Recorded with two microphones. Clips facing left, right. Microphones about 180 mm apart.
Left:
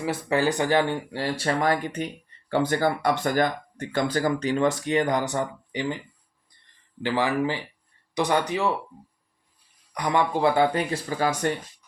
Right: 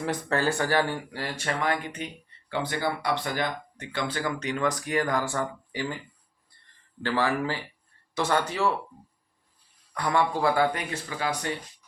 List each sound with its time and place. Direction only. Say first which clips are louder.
0.0 s speech: left 3 dB; 5° left (ahead or behind)
7.0 s speech: left 2 dB; 15° left (ahead or behind)
9.9 s speech: left 2 dB; 15° left (ahead or behind); by 11.5 s 45° left (ahead or behind)